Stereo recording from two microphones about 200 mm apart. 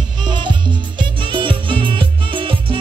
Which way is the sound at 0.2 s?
25° right (ahead or behind).